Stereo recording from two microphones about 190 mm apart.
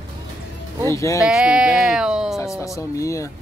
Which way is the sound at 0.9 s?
15° left (ahead or behind).